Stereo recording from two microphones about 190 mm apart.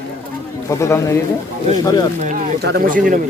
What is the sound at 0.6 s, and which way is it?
A man's voice, 15° left (ahead or behind).